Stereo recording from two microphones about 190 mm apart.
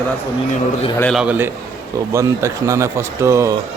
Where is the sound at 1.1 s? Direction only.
5° right (ahead or behind).